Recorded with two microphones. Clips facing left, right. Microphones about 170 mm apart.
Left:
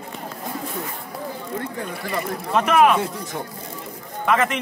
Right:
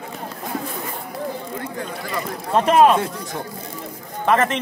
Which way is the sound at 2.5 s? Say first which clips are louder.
Right 2 dB; 30° right (ahead or behind).